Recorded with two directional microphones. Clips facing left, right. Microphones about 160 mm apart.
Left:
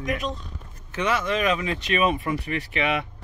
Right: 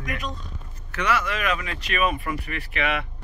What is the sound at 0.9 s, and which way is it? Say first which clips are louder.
Speech: left 1 dB; 20° left (ahead or behind).